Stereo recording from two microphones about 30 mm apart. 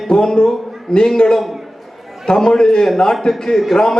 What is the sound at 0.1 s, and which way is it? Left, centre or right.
A man's voice, left.